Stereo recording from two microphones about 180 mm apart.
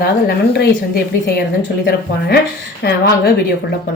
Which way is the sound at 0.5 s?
65° left (ahead or behind).